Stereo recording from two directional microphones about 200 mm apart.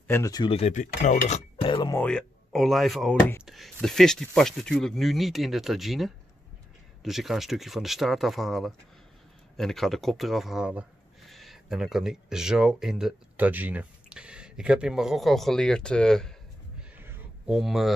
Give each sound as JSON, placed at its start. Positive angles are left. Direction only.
{"t": 0.1, "sound": "speech", "side_deg": 15}
{"t": 1.6, "sound": "speech", "side_deg": 20}
{"t": 2.0, "sound": "speech", "side_deg": 5}
{"t": 16.9, "sound": "a sound", "side_deg": -10}
{"t": 17.6, "sound": "speech", "side_deg": 0}